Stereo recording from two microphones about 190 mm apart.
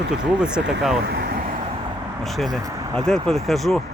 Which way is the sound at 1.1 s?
55° right (ahead or behind).